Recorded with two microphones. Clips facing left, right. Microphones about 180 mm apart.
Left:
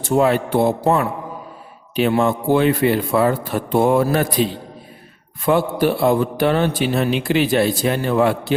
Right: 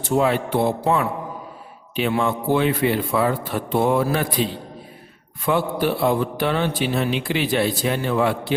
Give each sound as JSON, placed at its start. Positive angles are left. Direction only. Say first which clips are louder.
{"t": 0.0, "sound": "a man's voice", "louder": "left 3 dB", "side_deg": 45}
{"t": 5.5, "sound": "a man's voice", "louder": "left 4 dB", "side_deg": 45}